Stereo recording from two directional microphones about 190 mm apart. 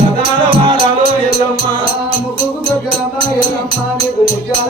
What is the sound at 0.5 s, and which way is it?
Music, 30° right (ahead or behind).